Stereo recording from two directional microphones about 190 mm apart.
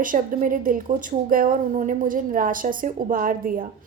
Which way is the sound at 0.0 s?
45° right (ahead or behind).